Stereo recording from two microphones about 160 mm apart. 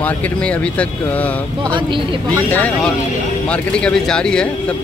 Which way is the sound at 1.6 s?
30° right (ahead or behind).